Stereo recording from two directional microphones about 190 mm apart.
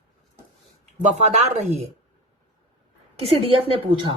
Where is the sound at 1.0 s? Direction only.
35° right (ahead or behind).